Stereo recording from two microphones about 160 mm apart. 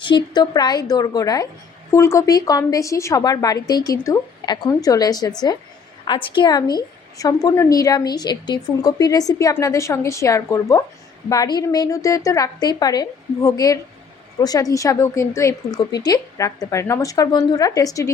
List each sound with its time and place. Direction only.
0.0 s a woman's voice: 30° left (ahead or behind)